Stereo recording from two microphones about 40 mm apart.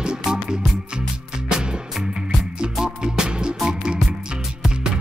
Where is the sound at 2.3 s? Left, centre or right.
Centre.